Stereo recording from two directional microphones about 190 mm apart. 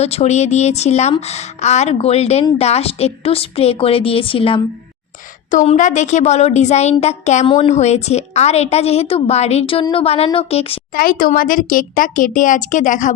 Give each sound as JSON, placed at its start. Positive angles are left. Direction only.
{"t": 0.0, "sound": "a woman's voice", "side_deg": 35}
{"t": 5.5, "sound": "a woman's voice", "side_deg": 40}
{"t": 10.9, "sound": "speech", "side_deg": 50}